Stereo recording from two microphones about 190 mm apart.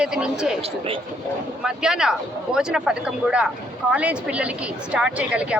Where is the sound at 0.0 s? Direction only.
5° right (ahead or behind).